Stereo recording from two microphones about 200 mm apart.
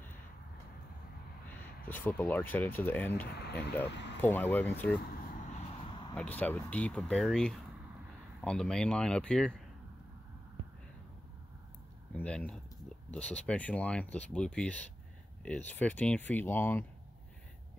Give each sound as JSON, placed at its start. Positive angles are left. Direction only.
{"t": 1.9, "sound": "speech", "side_deg": 10}
{"t": 3.3, "sound": "speech", "side_deg": 55}
{"t": 4.2, "sound": "speech", "side_deg": 10}
{"t": 6.1, "sound": "speech", "side_deg": 10}
{"t": 12.2, "sound": "speech", "side_deg": 5}